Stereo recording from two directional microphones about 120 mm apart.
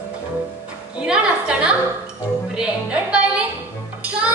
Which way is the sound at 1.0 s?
5° right (ahead or behind).